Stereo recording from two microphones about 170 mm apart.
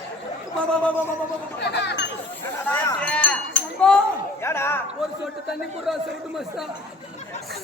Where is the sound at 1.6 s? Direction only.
85° left.